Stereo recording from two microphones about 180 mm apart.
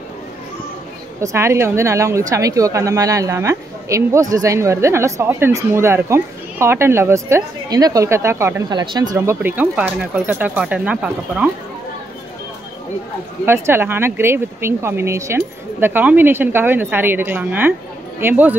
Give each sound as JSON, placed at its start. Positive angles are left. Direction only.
{"t": 1.2, "sound": "a woman's voice", "side_deg": -15}
{"t": 13.5, "sound": "a woman's voice", "side_deg": -15}